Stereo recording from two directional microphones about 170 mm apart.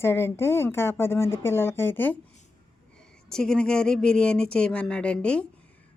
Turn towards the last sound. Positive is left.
turn(degrees=5)  # may be behind; listen again after turning